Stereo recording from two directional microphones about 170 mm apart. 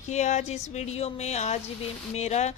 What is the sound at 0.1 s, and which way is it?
A woman's voice, 45° left (ahead or behind).